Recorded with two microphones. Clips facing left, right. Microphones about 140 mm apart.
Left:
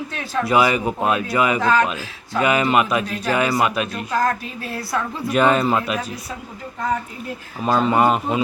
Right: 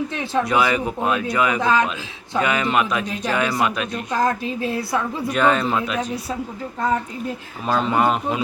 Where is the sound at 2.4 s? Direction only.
5° left (ahead or behind).